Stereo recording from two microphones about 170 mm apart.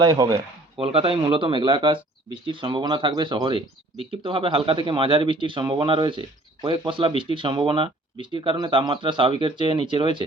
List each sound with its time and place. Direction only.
0.0 s speech: 20° right (ahead or behind)
0.8 s speech: 35° right (ahead or behind)